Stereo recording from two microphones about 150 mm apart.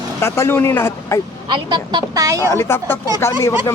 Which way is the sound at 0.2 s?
15° left (ahead or behind).